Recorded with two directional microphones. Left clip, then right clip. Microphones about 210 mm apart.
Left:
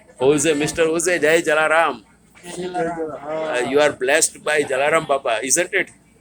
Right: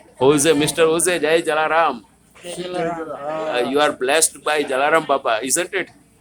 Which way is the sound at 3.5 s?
10° right (ahead or behind).